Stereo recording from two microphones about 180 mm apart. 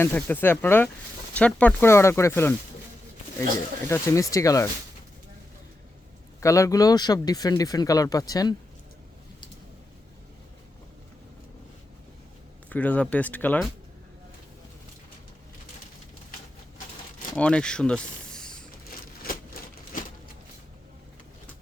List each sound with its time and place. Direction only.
0.0 s speech: 10° left (ahead or behind)
3.8 s speech: 15° left (ahead or behind)
6.4 s speech: 15° left (ahead or behind)
12.6 s speech: 10° left (ahead or behind)
17.3 s speech: 5° left (ahead or behind)